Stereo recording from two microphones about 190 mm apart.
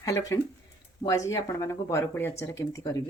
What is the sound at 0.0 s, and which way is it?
Speech, 15° left (ahead or behind).